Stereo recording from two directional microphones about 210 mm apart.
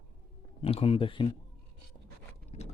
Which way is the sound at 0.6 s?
25° left (ahead or behind).